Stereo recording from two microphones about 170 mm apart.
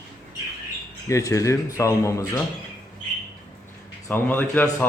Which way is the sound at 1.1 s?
20° left (ahead or behind).